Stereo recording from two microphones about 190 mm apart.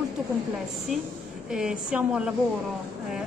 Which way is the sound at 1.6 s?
5° right (ahead or behind).